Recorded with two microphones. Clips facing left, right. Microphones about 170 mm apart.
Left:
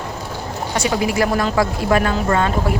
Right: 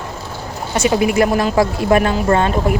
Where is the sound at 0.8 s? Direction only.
20° right (ahead or behind).